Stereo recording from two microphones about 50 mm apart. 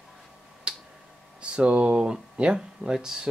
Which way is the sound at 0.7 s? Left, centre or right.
Centre.